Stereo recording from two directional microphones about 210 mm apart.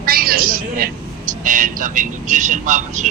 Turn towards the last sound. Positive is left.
turn(degrees=-35)  # may be behind; listen again after turning